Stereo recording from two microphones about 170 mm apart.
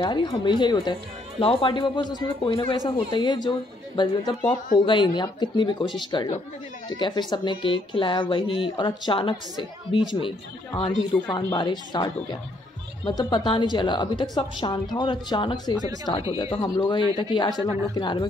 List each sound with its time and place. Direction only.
0.0 s speech: 25° left (ahead or behind)
17.6 s speech: 15° right (ahead or behind)
17.9 s speech: 25° left (ahead or behind)